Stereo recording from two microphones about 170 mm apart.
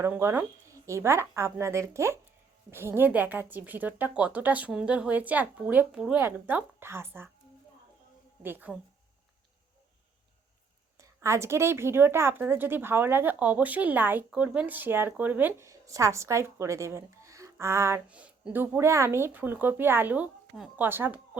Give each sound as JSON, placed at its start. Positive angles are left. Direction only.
{"t": 0.0, "sound": "a woman's voice", "side_deg": -15}
{"t": 8.4, "sound": "a woman's voice", "side_deg": -10}
{"t": 10.9, "sound": "a woman's voice", "side_deg": -15}